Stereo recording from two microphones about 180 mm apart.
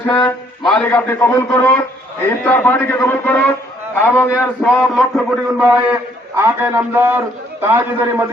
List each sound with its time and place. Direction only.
0.1 s a man's voice: 15° left (ahead or behind)
5.6 s a man's voice: 15° right (ahead or behind)